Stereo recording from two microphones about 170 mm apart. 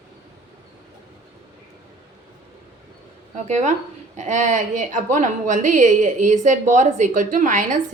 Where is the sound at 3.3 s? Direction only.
45° right (ahead or behind).